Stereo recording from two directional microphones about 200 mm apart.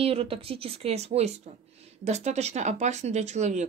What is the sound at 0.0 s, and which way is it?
Speech, 30° right (ahead or behind).